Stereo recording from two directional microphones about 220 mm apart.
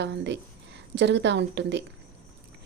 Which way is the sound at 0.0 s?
50° right (ahead or behind).